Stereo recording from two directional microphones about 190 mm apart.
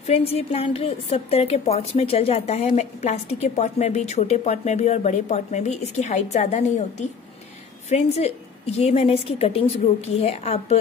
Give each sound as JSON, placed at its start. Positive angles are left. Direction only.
{"t": 0.0, "sound": "a woman's voice", "side_deg": 30}